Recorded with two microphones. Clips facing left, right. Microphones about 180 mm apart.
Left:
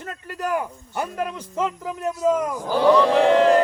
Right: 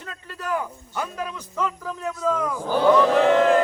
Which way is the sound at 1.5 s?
25° left (ahead or behind).